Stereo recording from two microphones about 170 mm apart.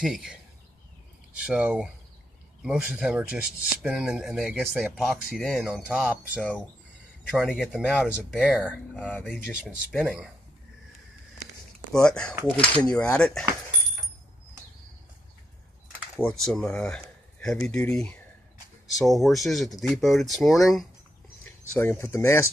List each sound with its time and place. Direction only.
0.0 s speech: 5° right (ahead or behind)
8.9 s speech: 5° left (ahead or behind)
10.0 s speech: 5° right (ahead or behind)
11.9 s speech: 5° left (ahead or behind)
16.2 s speech: 5° left (ahead or behind)
21.7 s speech: 15° left (ahead or behind)